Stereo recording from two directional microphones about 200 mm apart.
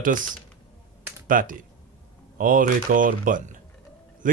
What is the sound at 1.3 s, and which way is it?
Speech, 45° right (ahead or behind).